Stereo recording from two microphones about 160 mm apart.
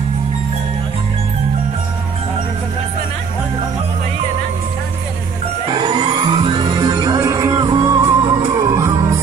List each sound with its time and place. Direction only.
5.7 s music: 25° right (ahead or behind)